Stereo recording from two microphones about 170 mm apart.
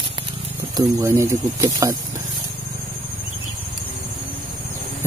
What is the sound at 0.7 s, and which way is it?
Speech, 15° right (ahead or behind).